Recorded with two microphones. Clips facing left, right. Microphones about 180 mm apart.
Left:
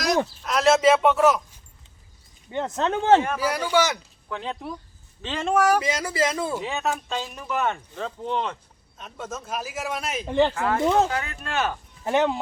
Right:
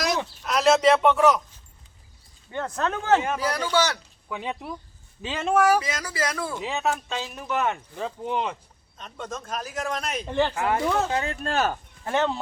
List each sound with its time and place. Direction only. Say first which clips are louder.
0.4 s a sound: even; centre (ahead or behind)
2.5 s speech: left 2 dB; 20° left (ahead or behind)
3.3 s a man's voice: left 2 dB; 10° left (ahead or behind)
4.3 s speech: even; 10° right (ahead or behind)
5.8 s speech: left 5 dB; 25° left (ahead or behind)
6.6 s a man's voice: even; centre (ahead or behind)
7.9 s speech: even; 10° right (ahead or behind)
9.0 s a man's voice: even; 5° left (ahead or behind)
10.5 s speech: even; 20° right (ahead or behind)
10.8 s speech: left 7 dB; 20° left (ahead or behind)
11.1 s speech: right 3 dB; 30° right (ahead or behind)
11.5 s speech: right 1 dB; 40° right (ahead or behind)
12.0 s a man's voice: left 3 dB; 15° left (ahead or behind)